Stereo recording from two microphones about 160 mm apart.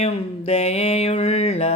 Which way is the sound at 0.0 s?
40° left (ahead or behind).